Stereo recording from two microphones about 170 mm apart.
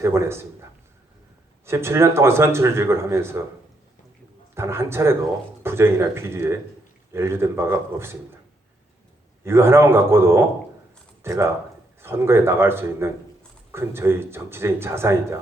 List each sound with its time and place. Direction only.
0.0 s speech: 15° right (ahead or behind)
1.6 s speech: 15° right (ahead or behind)
4.5 s speech: 15° right (ahead or behind)
9.4 s speech: 15° right (ahead or behind)